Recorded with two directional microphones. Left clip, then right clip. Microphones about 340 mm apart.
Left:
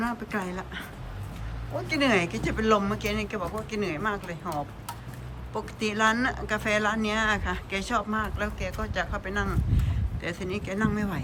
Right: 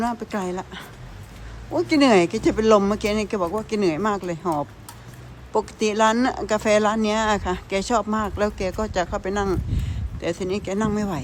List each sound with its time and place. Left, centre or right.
0.0 s speech: centre
1.9 s speech: centre
5.5 s speech: centre